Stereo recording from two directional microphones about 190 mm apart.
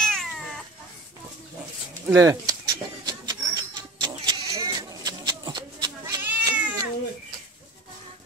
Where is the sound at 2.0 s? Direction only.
15° right (ahead or behind).